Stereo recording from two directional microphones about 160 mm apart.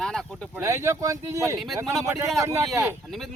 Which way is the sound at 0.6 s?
15° right (ahead or behind).